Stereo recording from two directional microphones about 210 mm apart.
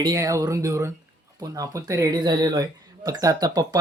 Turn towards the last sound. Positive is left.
turn(degrees=-20)  # may be behind; listen again after turning